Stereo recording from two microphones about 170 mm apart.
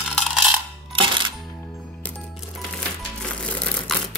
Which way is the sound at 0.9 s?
30° right (ahead or behind).